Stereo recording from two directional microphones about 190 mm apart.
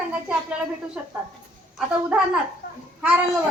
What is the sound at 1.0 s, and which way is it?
Speech, 5° right (ahead or behind).